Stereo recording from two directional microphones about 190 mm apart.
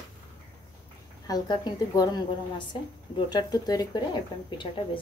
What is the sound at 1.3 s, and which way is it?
A woman's voice, 20° left (ahead or behind).